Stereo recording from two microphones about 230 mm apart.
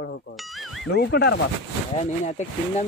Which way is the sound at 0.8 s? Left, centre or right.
Left.